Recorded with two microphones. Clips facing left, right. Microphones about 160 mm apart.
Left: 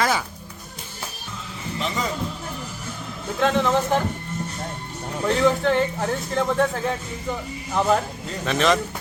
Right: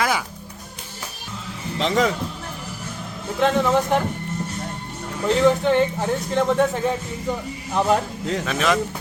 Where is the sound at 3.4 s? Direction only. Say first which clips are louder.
Right 2 dB; 10° right (ahead or behind).